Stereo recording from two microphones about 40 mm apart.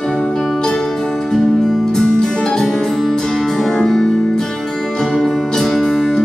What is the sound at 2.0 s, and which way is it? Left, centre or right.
Music, centre.